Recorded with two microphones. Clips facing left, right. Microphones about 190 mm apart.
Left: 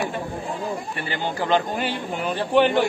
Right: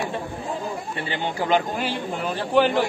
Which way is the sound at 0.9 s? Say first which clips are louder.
Even; 20° right (ahead or behind).